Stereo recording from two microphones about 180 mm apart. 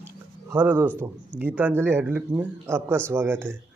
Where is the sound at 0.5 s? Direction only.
10° right (ahead or behind).